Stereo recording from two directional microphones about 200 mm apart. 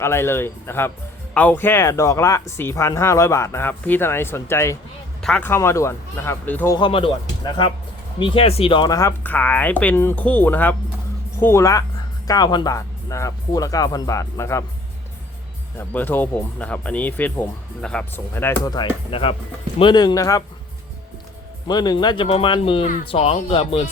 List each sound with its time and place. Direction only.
0.0 s speech: 10° left (ahead or behind)
6.7 s speech: 25° left (ahead or behind)
15.8 s speech: 10° left (ahead or behind)
21.7 s speech: 20° left (ahead or behind)